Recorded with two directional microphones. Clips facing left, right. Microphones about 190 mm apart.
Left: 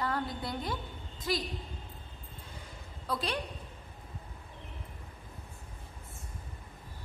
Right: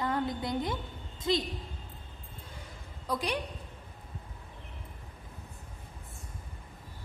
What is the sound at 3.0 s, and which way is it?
Speech, 15° right (ahead or behind).